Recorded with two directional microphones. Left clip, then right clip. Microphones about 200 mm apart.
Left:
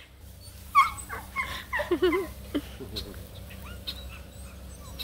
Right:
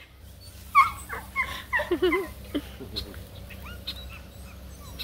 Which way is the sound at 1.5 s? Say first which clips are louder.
Even; centre (ahead or behind).